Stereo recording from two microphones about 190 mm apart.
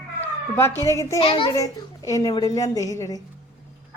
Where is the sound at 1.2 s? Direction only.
25° left (ahead or behind).